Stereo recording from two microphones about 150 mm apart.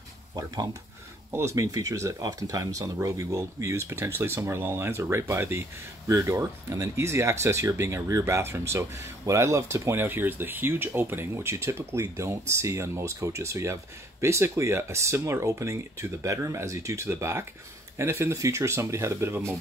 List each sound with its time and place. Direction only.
1.3 s speech: 20° right (ahead or behind)